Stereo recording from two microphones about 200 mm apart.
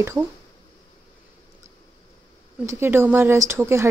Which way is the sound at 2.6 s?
10° right (ahead or behind).